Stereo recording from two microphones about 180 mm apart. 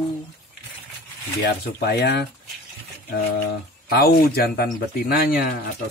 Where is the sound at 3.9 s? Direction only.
60° left (ahead or behind).